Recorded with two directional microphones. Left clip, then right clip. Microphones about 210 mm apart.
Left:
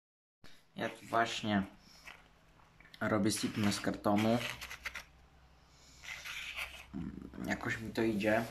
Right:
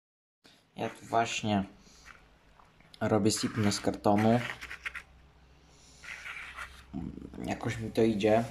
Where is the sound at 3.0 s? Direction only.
5° right (ahead or behind).